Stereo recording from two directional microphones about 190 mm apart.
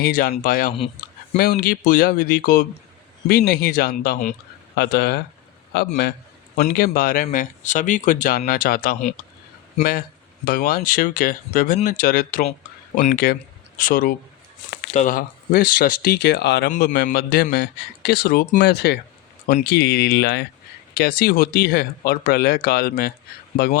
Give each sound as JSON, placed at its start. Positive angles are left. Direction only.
{"t": 0.0, "sound": "speech", "side_deg": 50}
{"t": 4.7, "sound": "a man's voice", "side_deg": 60}
{"t": 10.4, "sound": "a man's voice", "side_deg": 50}